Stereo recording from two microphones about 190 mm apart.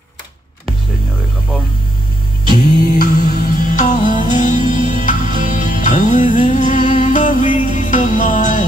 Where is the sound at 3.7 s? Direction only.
45° left (ahead or behind).